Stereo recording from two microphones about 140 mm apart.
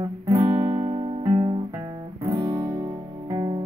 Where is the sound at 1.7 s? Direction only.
20° right (ahead or behind).